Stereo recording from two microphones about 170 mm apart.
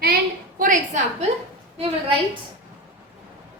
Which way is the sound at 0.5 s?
45° right (ahead or behind).